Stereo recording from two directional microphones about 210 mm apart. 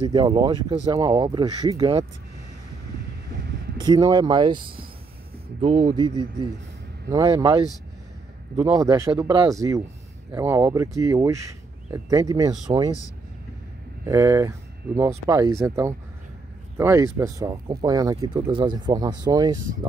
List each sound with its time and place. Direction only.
0.1 s speech: 20° right (ahead or behind)
3.8 s speech: 20° right (ahead or behind)
14.0 s speech: 15° right (ahead or behind)